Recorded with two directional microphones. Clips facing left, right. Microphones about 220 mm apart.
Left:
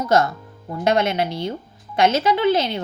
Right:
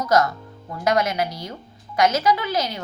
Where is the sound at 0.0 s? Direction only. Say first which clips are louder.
Left 1 dB; 25° left (ahead or behind).